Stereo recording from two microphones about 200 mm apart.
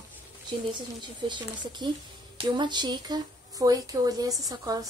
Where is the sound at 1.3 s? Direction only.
25° right (ahead or behind).